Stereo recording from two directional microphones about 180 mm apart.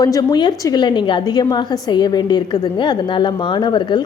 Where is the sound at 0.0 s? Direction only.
20° left (ahead or behind).